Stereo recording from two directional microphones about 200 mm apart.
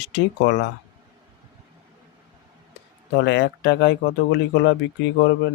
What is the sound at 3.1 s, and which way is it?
Speech, 60° left (ahead or behind).